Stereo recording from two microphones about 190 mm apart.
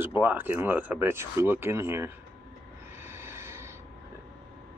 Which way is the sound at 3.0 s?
15° right (ahead or behind).